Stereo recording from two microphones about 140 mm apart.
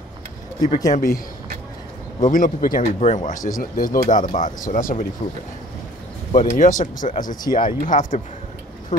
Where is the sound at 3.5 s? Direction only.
85° left.